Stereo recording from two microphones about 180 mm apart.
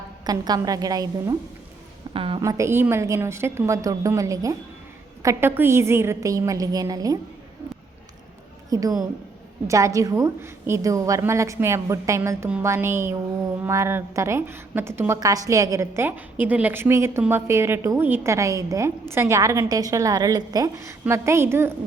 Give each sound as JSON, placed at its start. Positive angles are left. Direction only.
{"t": 0.3, "sound": "a woman's voice", "side_deg": -20}
{"t": 2.4, "sound": "a woman's voice", "side_deg": -15}
{"t": 8.7, "sound": "a woman's voice", "side_deg": -20}